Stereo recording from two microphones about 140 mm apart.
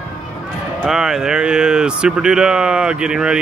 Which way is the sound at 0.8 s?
5° right (ahead or behind).